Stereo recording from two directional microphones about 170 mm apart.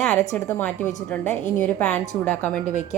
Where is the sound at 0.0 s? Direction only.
5° left (ahead or behind).